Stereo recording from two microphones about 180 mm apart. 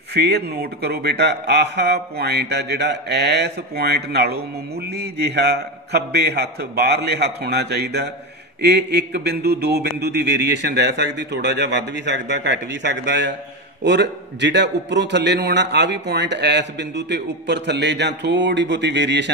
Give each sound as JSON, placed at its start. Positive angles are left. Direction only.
{"t": 0.1, "sound": "a man's voice", "side_deg": -65}